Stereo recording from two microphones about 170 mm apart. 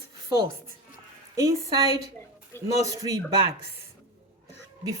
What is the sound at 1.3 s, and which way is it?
Speech, 20° right (ahead or behind).